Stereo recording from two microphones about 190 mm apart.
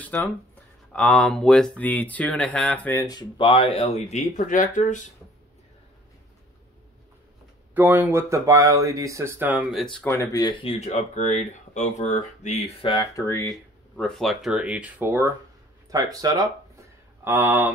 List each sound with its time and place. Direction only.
0.0 s speech: 10° left (ahead or behind); by 5.0 s 40° left (ahead or behind)
7.7 s speech: 10° right (ahead or behind)
10.0 s speech: 15° left (ahead or behind); by 17.7 s 10° right (ahead or behind)